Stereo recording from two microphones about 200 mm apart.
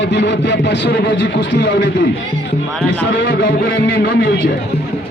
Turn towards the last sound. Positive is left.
turn(degrees=55)  # may be behind; listen again after turning